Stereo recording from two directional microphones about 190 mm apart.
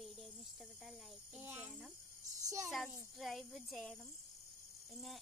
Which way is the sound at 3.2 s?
Centre (ahead or behind).